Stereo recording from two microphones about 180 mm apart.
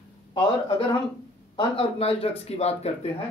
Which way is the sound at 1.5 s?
30° left (ahead or behind).